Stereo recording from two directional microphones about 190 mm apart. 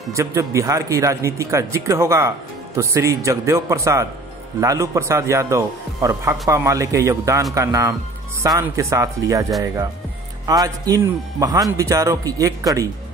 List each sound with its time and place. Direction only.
0.1 s speech: 15° right (ahead or behind)